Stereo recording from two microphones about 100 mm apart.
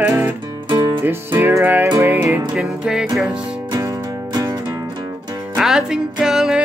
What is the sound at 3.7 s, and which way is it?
Music, 40° right (ahead or behind).